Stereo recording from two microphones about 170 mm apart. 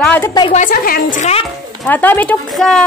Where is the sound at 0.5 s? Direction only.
50° left (ahead or behind).